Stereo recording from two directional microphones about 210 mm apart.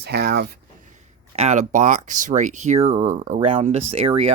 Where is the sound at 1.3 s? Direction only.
30° right (ahead or behind).